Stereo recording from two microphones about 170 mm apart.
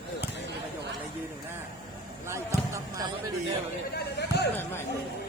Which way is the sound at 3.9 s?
80° left.